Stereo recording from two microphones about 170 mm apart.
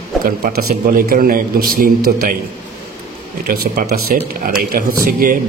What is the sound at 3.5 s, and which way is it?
A man's voice, 55° right (ahead or behind).